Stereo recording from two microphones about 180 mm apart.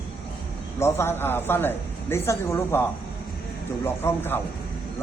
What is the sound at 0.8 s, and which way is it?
Speech, 15° left (ahead or behind).